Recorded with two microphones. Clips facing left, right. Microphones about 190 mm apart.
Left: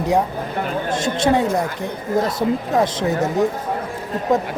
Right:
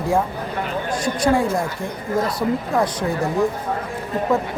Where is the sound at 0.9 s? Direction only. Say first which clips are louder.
Even; 25° left (ahead or behind).